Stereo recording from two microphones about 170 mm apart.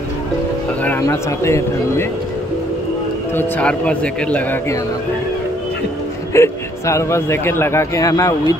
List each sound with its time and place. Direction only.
0.8 s speech: 15° left (ahead or behind)
3.3 s speech: 10° left (ahead or behind)
6.3 s speech: 15° left (ahead or behind)